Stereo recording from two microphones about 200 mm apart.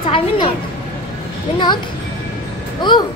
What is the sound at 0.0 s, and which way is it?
Speech, 25° left (ahead or behind).